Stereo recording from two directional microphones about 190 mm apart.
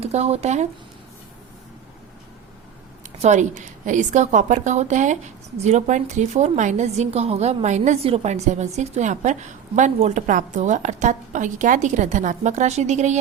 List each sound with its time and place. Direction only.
0.0 s a woman's voice: 35° right (ahead or behind)
3.2 s a woman's voice: 40° right (ahead or behind)